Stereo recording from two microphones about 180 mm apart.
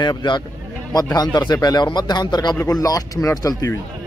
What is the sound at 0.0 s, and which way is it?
Speech, 25° left (ahead or behind).